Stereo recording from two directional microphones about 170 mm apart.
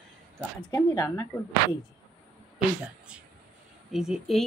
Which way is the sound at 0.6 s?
25° left (ahead or behind).